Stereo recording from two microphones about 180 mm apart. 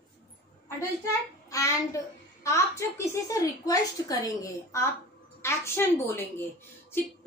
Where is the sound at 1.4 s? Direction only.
15° left (ahead or behind).